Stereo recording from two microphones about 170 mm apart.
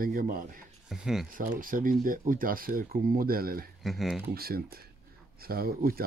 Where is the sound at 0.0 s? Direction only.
55° right (ahead or behind).